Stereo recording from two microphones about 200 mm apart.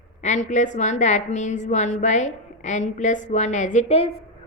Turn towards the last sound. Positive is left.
turn(degrees=35)  # may be behind; listen again after turning